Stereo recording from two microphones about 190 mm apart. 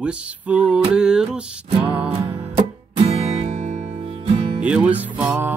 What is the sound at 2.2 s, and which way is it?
Music, 30° right (ahead or behind).